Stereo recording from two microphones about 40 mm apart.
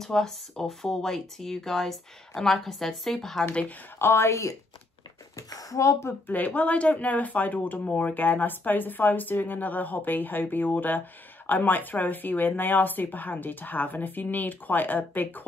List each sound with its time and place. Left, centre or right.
0.0 s speech: centre
4.0 s a woman's voice: left
6.2 s speech: left